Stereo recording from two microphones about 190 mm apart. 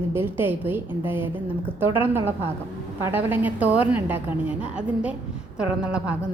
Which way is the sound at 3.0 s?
10° right (ahead or behind).